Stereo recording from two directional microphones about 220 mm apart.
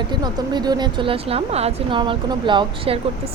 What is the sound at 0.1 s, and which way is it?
Speech, 20° right (ahead or behind).